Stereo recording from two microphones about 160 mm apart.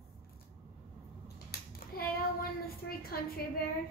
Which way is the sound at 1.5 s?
80° left.